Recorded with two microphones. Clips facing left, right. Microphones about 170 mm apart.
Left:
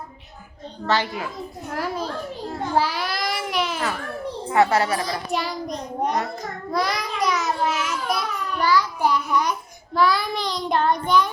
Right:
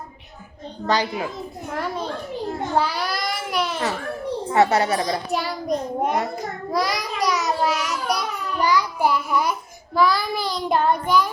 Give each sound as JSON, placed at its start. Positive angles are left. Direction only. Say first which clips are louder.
{"t": 0.9, "sound": "a child's voice", "louder": "right 1 dB", "side_deg": -20}
{"t": 1.7, "sound": "child singing", "louder": "even", "side_deg": 5}
{"t": 2.7, "sound": "babbling", "louder": "even", "side_deg": 0}
{"t": 4.5, "sound": "a child's voice", "louder": "right 1 dB", "side_deg": -20}
{"t": 4.9, "sound": "child singing", "louder": "right 3 dB", "side_deg": -35}
{"t": 5.3, "sound": "child singing", "louder": "right 3 dB", "side_deg": 0}
{"t": 8.6, "sound": "child singing", "louder": "even", "side_deg": -15}